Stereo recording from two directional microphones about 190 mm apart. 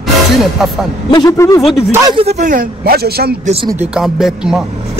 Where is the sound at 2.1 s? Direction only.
35° right (ahead or behind); by 3.3 s 55° right (ahead or behind).